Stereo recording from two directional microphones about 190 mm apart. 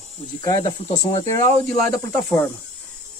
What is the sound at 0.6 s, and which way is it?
Speech, 30° left (ahead or behind).